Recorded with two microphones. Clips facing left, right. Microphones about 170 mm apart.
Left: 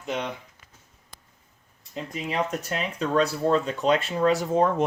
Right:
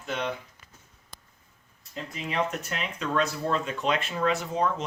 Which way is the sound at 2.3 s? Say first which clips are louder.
Left 2 dB; 35° left (ahead or behind).